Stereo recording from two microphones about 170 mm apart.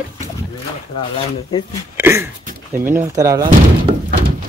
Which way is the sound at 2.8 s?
15° right (ahead or behind).